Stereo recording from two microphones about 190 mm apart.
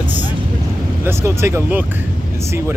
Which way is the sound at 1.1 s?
15° right (ahead or behind).